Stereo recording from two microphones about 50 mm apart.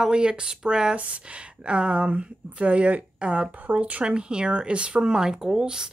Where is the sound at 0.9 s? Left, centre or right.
Right.